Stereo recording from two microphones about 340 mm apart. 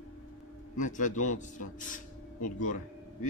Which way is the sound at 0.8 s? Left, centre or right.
Left.